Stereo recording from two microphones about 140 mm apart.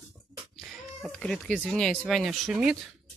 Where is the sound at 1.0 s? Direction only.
5° left (ahead or behind).